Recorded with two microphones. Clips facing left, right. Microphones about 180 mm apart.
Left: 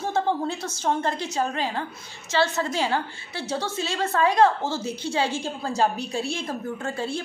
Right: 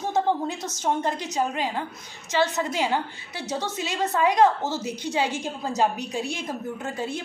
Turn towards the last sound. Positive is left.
turn(degrees=-15)  # may be behind; listen again after turning